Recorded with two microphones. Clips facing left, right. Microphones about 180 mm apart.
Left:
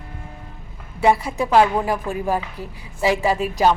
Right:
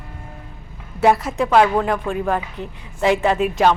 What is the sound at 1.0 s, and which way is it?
A woman's voice, centre (ahead or behind).